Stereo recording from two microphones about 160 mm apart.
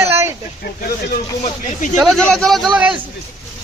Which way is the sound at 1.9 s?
5° left (ahead or behind).